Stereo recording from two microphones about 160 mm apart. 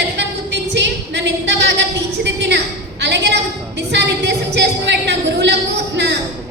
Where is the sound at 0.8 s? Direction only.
90° right.